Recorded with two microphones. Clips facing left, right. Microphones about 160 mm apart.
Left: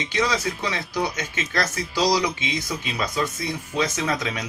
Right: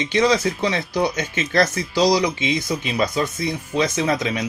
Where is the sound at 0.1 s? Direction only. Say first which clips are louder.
Right 6 dB; 30° right (ahead or behind).